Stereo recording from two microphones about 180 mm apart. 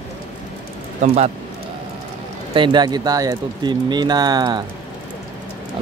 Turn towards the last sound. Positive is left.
turn(degrees=-25)  # may be behind; listen again after turning